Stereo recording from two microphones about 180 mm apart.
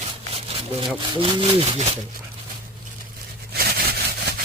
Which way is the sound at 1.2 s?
30° right (ahead or behind).